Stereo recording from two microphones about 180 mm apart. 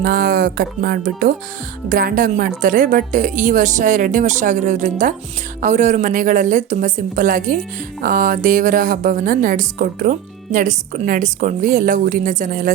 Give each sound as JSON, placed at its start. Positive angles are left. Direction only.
{"t": 0.0, "sound": "a woman's voice", "side_deg": -55}